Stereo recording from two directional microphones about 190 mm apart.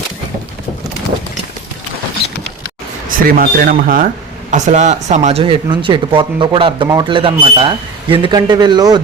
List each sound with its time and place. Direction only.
3.2 s speech: 50° right (ahead or behind); by 9.0 s 20° right (ahead or behind)